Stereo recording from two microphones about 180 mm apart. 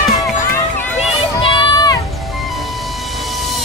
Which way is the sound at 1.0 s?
30° left (ahead or behind).